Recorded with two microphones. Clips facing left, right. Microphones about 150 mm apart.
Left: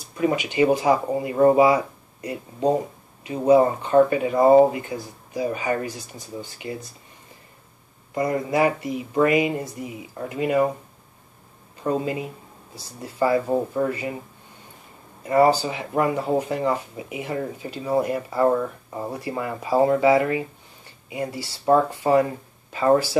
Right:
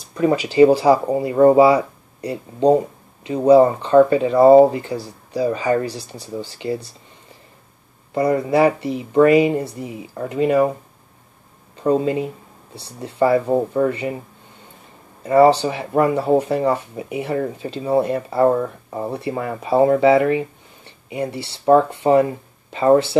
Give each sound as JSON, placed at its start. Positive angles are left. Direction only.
{"t": 0.2, "sound": "speech", "side_deg": -35}
{"t": 8.1, "sound": "speech", "side_deg": -30}
{"t": 11.7, "sound": "a sound", "side_deg": -30}
{"t": 12.7, "sound": "speech", "side_deg": -30}
{"t": 15.2, "sound": "speech", "side_deg": -30}